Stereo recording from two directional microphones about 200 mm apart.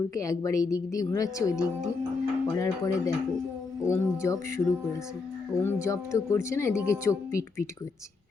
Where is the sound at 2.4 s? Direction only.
15° left (ahead or behind).